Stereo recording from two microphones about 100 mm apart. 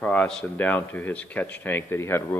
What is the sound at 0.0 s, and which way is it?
Speech, 15° left (ahead or behind).